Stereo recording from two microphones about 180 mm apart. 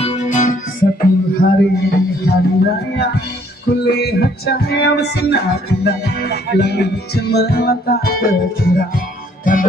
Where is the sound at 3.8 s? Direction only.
65° left (ahead or behind).